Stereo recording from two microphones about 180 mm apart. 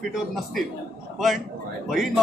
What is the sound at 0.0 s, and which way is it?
Speech, centre (ahead or behind).